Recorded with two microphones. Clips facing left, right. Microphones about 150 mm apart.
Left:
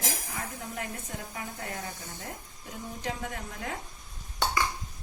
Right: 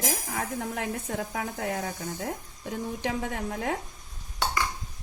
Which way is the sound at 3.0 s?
70° right (ahead or behind).